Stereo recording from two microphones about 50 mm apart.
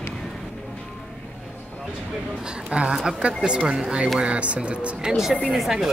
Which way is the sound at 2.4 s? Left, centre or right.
Right.